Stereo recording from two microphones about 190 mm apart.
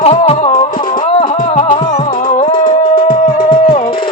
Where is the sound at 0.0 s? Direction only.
30° left (ahead or behind).